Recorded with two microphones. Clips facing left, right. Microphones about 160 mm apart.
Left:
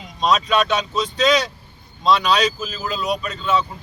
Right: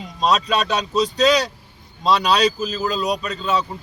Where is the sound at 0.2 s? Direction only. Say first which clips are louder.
Left 1 dB; 35° right (ahead or behind).